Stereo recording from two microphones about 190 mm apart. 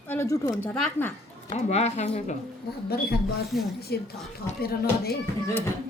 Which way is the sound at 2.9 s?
55° left (ahead or behind).